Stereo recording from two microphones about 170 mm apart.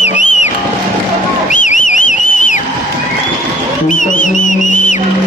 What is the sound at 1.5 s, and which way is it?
Whistle, 50° left (ahead or behind).